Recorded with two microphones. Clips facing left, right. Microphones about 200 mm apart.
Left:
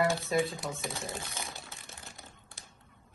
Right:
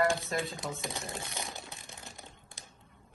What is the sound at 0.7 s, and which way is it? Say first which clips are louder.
Crumpling: left 1 dB; 15° right (ahead or behind).